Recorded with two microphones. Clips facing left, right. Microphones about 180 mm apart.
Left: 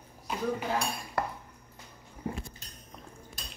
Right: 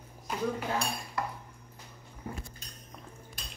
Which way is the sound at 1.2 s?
65° left (ahead or behind).